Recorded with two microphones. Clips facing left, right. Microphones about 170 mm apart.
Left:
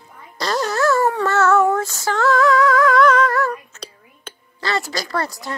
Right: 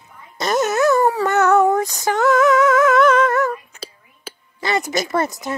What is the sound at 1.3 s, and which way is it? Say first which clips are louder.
Female singing: right 1 dB; 15° right (ahead or behind).